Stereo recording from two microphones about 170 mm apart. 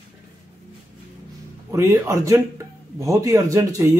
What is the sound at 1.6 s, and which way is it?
A man's voice, 15° right (ahead or behind).